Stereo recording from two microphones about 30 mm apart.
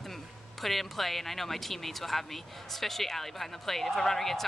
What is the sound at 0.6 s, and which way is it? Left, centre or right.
Speech, centre.